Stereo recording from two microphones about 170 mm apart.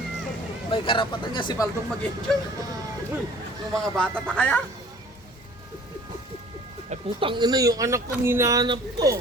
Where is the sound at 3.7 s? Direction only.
5° left (ahead or behind).